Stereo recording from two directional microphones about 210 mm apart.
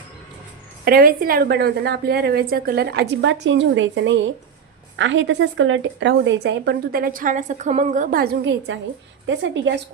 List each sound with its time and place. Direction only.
0.9 s a woman's voice: 45° right (ahead or behind)